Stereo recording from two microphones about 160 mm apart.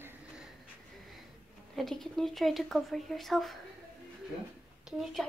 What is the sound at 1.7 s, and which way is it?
Speech, centre (ahead or behind).